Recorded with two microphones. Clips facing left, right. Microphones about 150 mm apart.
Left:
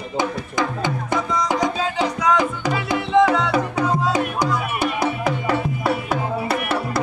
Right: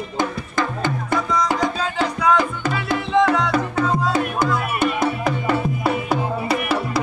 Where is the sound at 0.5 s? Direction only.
15° left (ahead or behind).